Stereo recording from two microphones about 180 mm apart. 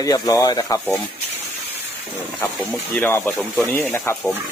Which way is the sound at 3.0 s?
10° left (ahead or behind).